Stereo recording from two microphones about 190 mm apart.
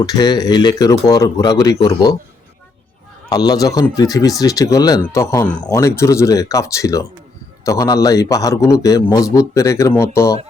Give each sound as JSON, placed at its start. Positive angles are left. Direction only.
{"t": 0.0, "sound": "speech", "side_deg": 20}
{"t": 3.2, "sound": "speech", "side_deg": 20}